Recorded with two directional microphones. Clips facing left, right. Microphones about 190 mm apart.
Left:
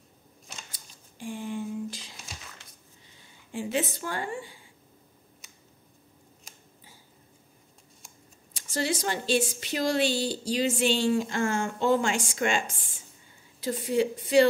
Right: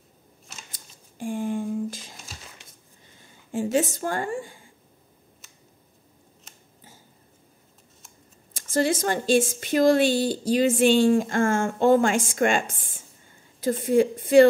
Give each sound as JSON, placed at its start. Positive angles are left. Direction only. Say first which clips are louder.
{"t": 0.7, "sound": "a sound", "louder": "right 2 dB", "side_deg": -50}
{"t": 3.5, "sound": "a woman's voice", "louder": "right 6 dB", "side_deg": -40}
{"t": 8.5, "sound": "a woman's voice", "louder": "right 6 dB", "side_deg": -50}